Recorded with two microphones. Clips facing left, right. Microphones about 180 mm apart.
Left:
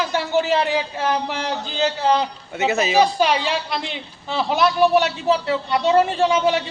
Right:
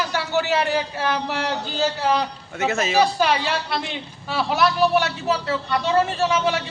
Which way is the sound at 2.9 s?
15° left (ahead or behind).